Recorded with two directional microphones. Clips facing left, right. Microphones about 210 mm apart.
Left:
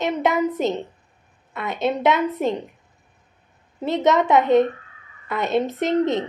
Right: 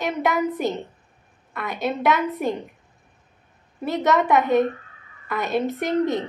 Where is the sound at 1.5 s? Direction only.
20° left (ahead or behind).